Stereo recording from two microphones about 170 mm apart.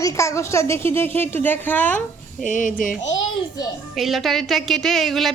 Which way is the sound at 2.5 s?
50° left (ahead or behind).